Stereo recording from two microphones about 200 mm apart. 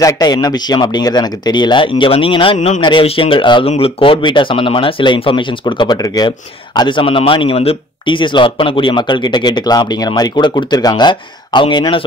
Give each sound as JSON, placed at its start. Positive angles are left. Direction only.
{"t": 0.0, "sound": "speech", "side_deg": 20}